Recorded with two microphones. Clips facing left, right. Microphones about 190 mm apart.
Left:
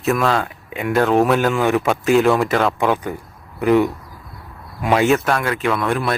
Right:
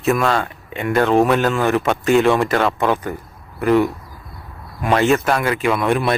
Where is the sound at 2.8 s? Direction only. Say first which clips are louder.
Even; 15° left (ahead or behind).